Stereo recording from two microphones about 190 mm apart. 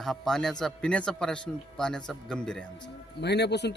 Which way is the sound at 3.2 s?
60° left (ahead or behind).